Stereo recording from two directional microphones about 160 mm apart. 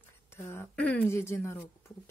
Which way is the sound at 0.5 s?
10° left (ahead or behind).